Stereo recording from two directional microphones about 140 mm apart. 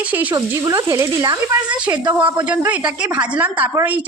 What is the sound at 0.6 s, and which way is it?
Speech, 25° right (ahead or behind).